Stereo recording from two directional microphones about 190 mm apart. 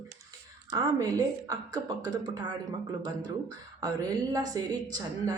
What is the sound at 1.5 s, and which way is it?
A woman's voice, 20° right (ahead or behind).